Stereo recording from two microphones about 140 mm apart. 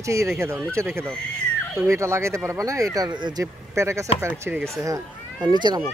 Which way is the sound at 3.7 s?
20° right (ahead or behind).